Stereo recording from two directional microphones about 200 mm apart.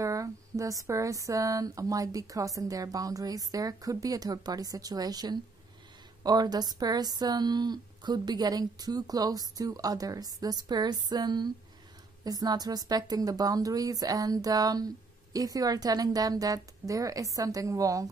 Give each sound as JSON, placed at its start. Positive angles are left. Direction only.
{"t": 0.0, "sound": "speech", "side_deg": -15}